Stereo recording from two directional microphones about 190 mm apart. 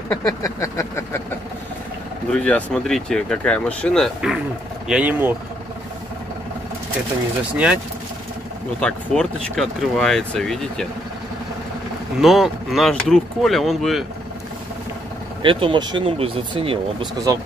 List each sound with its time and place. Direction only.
0.1 s a sound: 15° left (ahead or behind)
2.3 s speech: 5° left (ahead or behind)
8.8 s speech: 5° left (ahead or behind)
12.2 s speech: centre (ahead or behind)
15.4 s speech: 25° right (ahead or behind)